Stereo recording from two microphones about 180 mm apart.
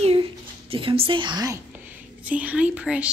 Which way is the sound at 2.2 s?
10° right (ahead or behind).